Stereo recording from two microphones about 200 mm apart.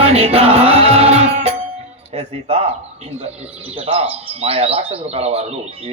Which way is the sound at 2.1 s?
30° right (ahead or behind).